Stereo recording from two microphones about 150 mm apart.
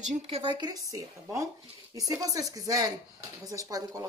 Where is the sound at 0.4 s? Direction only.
30° right (ahead or behind).